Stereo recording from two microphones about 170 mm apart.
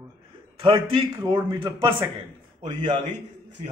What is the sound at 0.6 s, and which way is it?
Speech, 30° right (ahead or behind).